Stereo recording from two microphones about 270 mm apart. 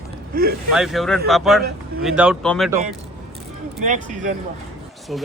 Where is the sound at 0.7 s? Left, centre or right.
Centre.